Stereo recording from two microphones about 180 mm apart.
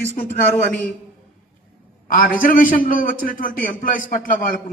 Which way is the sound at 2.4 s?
50° left (ahead or behind).